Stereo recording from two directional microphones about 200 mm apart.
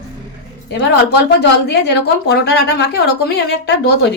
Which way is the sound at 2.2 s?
55° left (ahead or behind).